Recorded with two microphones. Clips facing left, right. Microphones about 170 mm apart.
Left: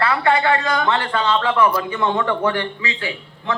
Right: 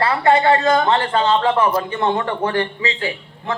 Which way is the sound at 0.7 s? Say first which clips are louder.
Right 4 dB; 40° right (ahead or behind).